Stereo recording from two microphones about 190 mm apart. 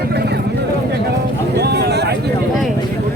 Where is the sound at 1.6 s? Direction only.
60° right (ahead or behind).